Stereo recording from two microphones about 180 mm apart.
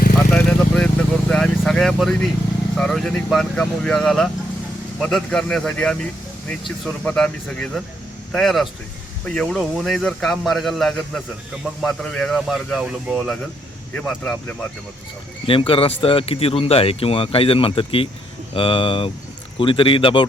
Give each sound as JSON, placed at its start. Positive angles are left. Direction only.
{"t": 0.3, "sound": "vehicle", "side_deg": 5}
{"t": 2.7, "sound": "speech", "side_deg": 0}
{"t": 15.4, "sound": "speech", "side_deg": 30}